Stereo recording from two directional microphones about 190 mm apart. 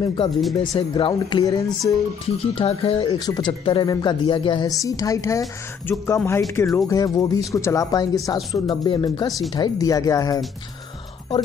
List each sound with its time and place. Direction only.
0.0 s speech: 25° left (ahead or behind)